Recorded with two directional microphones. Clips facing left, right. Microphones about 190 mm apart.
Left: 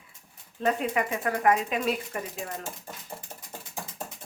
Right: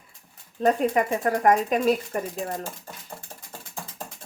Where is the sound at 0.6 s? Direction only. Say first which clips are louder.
Right 5 dB; 40° right (ahead or behind).